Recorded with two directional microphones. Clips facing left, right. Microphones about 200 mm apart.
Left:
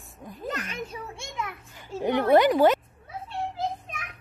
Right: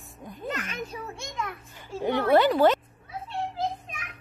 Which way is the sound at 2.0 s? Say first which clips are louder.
Left 1 dB; 15° left (ahead or behind).